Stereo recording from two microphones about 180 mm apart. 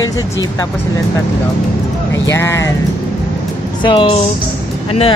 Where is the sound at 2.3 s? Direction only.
15° left (ahead or behind).